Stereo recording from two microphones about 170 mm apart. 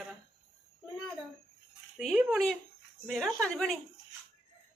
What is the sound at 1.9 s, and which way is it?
Speech, centre (ahead or behind).